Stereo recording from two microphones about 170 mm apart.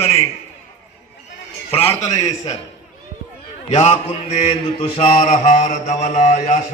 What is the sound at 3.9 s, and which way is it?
Mantra, 40° left (ahead or behind).